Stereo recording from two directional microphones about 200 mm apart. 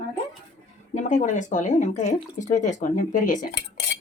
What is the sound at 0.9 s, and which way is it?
Speech, 40° left (ahead or behind).